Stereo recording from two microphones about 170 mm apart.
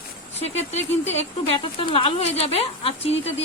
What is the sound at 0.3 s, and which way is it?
Speech, 40° left (ahead or behind).